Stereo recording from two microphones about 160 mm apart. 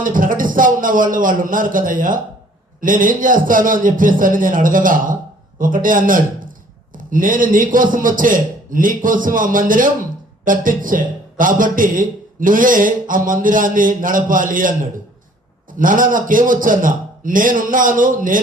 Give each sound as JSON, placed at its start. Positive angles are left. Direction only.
{"t": 0.0, "sound": "a man's voice", "side_deg": -55}